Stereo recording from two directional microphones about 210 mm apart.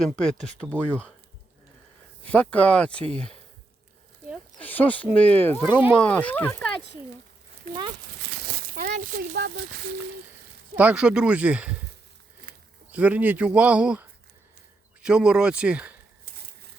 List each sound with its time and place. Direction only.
0.0 s speech: centre (ahead or behind)
2.2 s speech: 5° left (ahead or behind)
4.6 s speech: 10° left (ahead or behind)
8.9 s speech: 45° right (ahead or behind)
10.8 s speech: 5° right (ahead or behind)
12.9 s speech: 5° right (ahead or behind)